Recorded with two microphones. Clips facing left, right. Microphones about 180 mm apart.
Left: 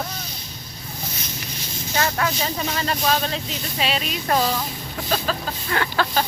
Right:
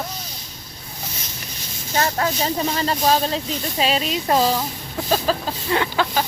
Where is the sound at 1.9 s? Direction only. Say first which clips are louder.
Right 2 dB; 30° right (ahead or behind).